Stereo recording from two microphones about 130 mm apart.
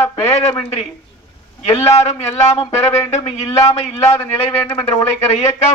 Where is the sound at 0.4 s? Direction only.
50° left (ahead or behind).